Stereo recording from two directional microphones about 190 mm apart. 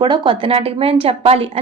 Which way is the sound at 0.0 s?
25° right (ahead or behind).